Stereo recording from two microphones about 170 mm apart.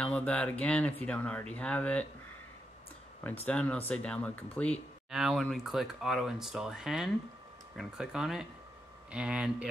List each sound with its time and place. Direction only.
0.0 s speech: 5° left (ahead or behind)
3.4 s speech: 10° left (ahead or behind)